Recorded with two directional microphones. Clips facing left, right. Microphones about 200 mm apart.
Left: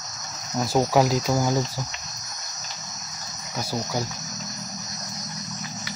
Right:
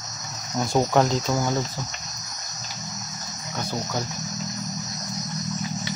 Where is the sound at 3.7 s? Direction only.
10° left (ahead or behind).